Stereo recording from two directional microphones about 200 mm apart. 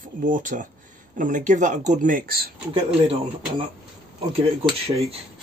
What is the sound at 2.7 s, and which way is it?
Speech, 30° right (ahead or behind).